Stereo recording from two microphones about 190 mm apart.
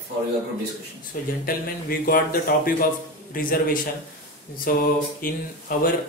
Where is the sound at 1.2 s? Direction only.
45° left (ahead or behind).